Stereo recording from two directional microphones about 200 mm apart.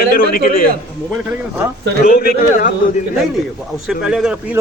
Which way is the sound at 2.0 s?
50° left (ahead or behind).